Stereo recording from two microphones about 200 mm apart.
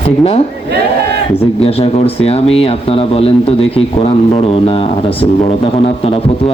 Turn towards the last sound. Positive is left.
turn(degrees=30)  # may be behind; listen again after turning